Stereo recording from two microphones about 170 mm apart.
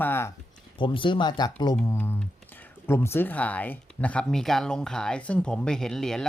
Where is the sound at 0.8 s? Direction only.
30° left (ahead or behind).